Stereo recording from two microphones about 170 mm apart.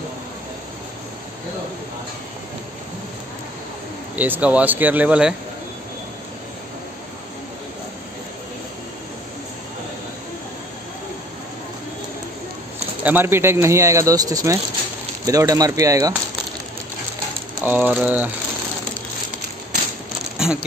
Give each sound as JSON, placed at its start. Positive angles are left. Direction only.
{"t": 4.2, "sound": "speech", "side_deg": -10}
{"t": 13.0, "sound": "speech", "side_deg": -10}
{"t": 17.6, "sound": "speech", "side_deg": -10}
{"t": 20.4, "sound": "coin", "side_deg": -5}